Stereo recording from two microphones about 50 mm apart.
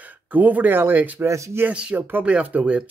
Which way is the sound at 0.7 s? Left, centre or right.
Right.